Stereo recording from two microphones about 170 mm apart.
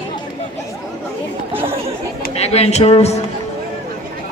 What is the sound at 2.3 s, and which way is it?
Speech, 40° left (ahead or behind).